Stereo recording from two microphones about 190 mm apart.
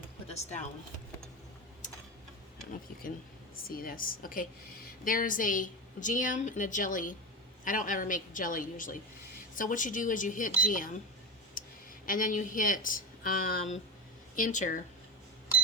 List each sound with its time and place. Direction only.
0.3 s speech: 40° left (ahead or behind)
3.7 s a woman's voice: 50° left (ahead or behind)
11.6 s a sound: 45° left (ahead or behind)
12.0 s a woman's voice: 45° left (ahead or behind)